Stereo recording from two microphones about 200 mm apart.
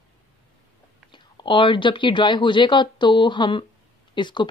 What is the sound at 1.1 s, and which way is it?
Speech, 25° left (ahead or behind).